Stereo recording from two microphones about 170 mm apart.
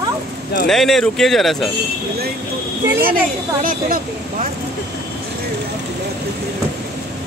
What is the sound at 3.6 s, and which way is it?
Speech, 50° right (ahead or behind).